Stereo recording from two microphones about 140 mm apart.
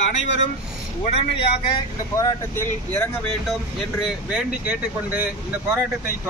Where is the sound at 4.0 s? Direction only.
10° right (ahead or behind).